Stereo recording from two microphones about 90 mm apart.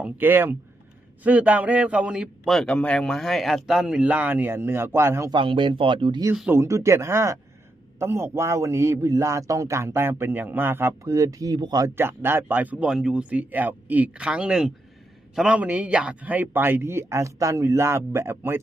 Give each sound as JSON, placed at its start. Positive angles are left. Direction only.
{"t": 0.0, "sound": "speech", "side_deg": -20}
{"t": 2.5, "sound": "speech", "side_deg": 10}
{"t": 5.3, "sound": "speech", "side_deg": -70}
{"t": 6.5, "sound": "a man's voice", "side_deg": -35}
{"t": 11.9, "sound": "speech", "side_deg": -25}